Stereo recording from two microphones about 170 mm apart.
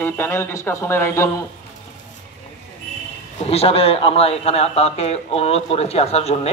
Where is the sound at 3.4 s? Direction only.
35° left (ahead or behind).